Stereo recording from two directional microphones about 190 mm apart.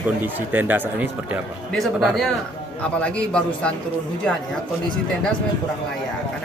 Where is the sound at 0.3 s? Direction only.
10° right (ahead or behind); by 3.7 s 5° left (ahead or behind).